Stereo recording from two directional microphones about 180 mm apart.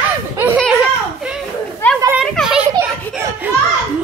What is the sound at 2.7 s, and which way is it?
Children playing, 15° right (ahead or behind).